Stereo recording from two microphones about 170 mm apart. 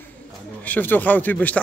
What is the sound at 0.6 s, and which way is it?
Speech, 10° left (ahead or behind).